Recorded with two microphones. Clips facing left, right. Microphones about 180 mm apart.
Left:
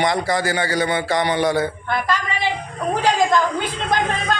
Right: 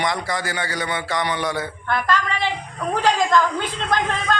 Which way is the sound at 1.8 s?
10° left (ahead or behind).